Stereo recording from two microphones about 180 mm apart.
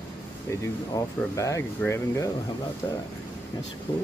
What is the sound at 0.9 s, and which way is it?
Speech, 20° left (ahead or behind).